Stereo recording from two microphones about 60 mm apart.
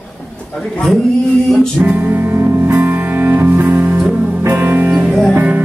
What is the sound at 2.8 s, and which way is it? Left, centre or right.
Music, right.